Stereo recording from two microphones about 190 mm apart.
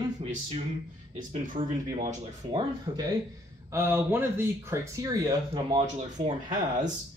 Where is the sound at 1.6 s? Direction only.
45° right (ahead or behind).